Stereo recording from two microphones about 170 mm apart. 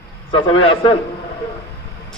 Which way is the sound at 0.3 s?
30° left (ahead or behind).